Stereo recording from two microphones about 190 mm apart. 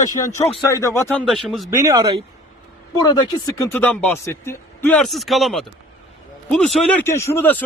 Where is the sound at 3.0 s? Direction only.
20° left (ahead or behind).